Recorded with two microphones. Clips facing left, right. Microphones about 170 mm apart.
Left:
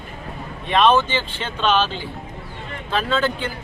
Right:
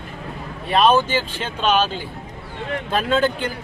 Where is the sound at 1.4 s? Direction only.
10° right (ahead or behind).